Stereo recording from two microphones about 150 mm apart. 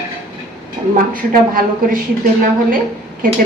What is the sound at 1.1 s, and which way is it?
Speech, 70° right (ahead or behind).